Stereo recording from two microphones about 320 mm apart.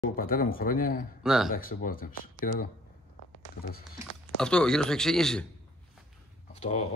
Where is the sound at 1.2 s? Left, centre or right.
Centre.